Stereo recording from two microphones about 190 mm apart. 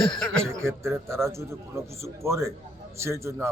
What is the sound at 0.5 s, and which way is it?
A man's voice, 15° right (ahead or behind).